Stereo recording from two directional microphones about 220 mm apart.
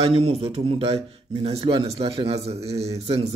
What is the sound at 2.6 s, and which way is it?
Speech, 15° right (ahead or behind).